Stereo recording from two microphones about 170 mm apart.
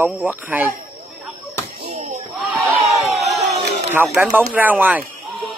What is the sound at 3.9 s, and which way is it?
Speech, 10° right (ahead or behind).